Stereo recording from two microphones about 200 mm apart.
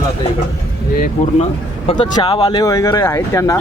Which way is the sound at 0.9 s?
45° left (ahead or behind).